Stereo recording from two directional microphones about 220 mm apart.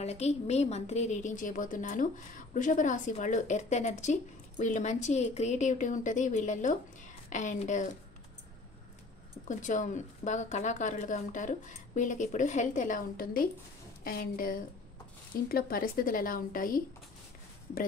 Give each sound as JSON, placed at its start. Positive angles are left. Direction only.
{"t": 0.0, "sound": "a woman's voice", "side_deg": 30}
{"t": 9.5, "sound": "a woman's voice", "side_deg": 35}